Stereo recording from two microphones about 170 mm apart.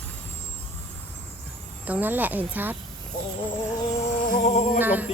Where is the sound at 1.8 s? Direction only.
10° right (ahead or behind).